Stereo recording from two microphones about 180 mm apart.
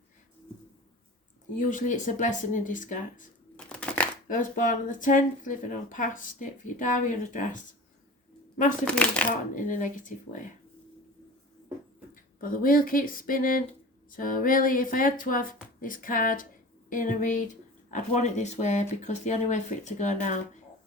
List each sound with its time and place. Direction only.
1.5 s speech: 45° left (ahead or behind)
3.7 s a sound: 5° left (ahead or behind)
4.3 s speech: 45° left (ahead or behind)
8.8 s speech: 5° left (ahead or behind)
9.6 s speech: 45° left (ahead or behind)
12.1 s speech: 50° left (ahead or behind)